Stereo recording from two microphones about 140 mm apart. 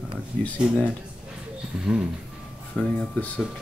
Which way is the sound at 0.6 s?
Centre (ahead or behind).